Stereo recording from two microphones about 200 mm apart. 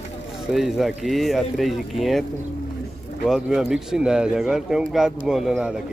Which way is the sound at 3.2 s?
5° right (ahead or behind).